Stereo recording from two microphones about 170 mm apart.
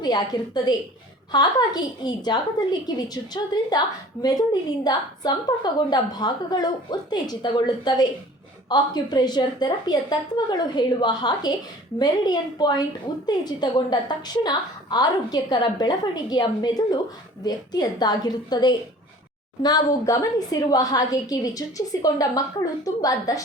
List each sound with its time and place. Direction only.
0.0 s a woman's voice: 25° left (ahead or behind)